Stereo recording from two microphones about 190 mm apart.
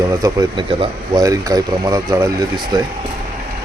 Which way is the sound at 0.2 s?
25° right (ahead or behind).